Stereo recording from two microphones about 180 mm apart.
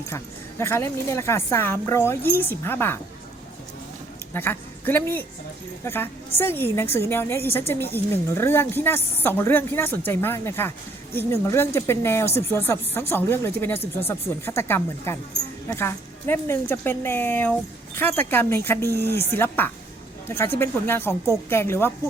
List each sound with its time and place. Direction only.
0.6 s speech: 15° left (ahead or behind)
4.4 s a woman's voice: 10° left (ahead or behind)